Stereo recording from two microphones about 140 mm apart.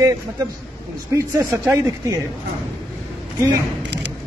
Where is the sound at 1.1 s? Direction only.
20° right (ahead or behind).